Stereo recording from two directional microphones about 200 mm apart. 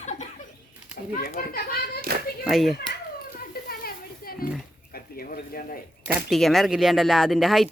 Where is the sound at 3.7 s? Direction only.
50° left (ahead or behind).